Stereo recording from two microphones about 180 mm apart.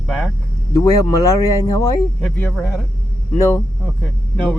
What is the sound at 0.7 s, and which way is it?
Speech, 20° left (ahead or behind).